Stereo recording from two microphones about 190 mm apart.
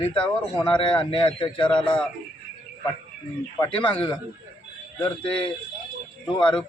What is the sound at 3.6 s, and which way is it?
Speech, 25° left (ahead or behind).